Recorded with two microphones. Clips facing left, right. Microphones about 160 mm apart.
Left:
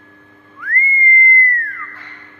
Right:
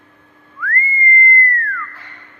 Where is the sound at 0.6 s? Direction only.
20° left (ahead or behind).